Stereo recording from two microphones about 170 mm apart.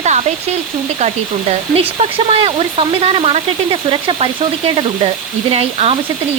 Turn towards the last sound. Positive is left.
turn(degrees=-35)  # may be behind; listen again after turning